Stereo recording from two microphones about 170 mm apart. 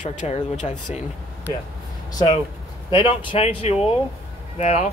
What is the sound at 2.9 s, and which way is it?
Speech, 30° left (ahead or behind).